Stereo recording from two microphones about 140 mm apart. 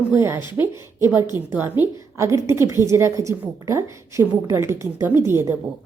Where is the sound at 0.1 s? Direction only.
15° right (ahead or behind).